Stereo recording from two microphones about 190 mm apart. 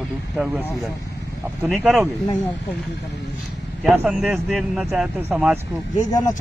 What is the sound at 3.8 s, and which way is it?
Speech, centre (ahead or behind).